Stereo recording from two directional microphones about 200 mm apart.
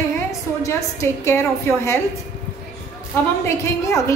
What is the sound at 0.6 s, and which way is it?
A woman's voice, 15° left (ahead or behind).